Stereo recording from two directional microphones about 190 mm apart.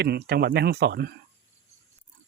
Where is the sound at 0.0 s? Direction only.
55° right (ahead or behind).